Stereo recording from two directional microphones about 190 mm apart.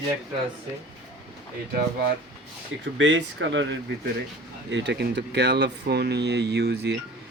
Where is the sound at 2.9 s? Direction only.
75° right (ahead or behind).